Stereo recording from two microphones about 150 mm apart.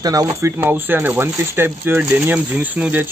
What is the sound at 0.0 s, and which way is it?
Speech, 25° right (ahead or behind).